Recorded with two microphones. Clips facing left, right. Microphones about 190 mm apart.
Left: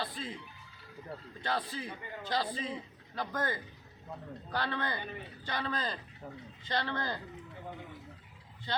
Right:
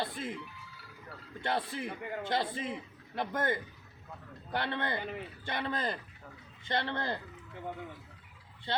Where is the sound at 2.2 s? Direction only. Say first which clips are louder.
Right 1 dB; 25° right (ahead or behind).